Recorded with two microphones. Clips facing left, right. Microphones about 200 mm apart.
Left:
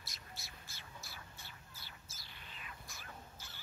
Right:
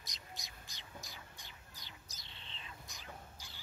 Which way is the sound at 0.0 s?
15° right (ahead or behind).